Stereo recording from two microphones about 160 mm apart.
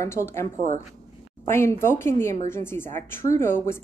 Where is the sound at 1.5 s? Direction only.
15° left (ahead or behind).